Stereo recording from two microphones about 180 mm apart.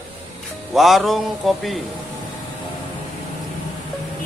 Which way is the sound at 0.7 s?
Centre (ahead or behind).